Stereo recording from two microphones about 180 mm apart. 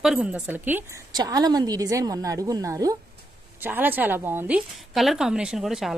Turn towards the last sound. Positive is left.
turn(degrees=0)  # may be behind; listen again after turning